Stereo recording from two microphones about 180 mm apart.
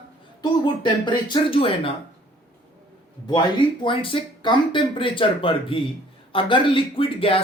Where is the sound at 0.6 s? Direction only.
25° left (ahead or behind).